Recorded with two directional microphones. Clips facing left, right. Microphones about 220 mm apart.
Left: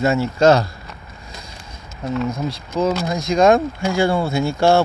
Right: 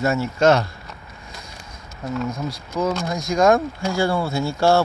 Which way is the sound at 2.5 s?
25° left (ahead or behind).